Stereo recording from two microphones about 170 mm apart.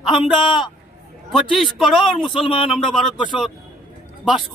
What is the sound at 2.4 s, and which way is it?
Speech, 30° left (ahead or behind).